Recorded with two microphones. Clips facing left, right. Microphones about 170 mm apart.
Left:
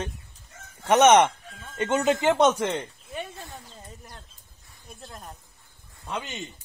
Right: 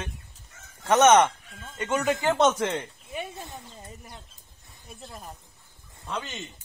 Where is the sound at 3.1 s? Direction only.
15° right (ahead or behind).